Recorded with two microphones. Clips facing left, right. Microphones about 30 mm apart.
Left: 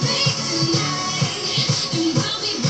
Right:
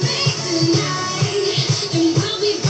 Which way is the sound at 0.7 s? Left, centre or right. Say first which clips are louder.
Right 2 dB; left.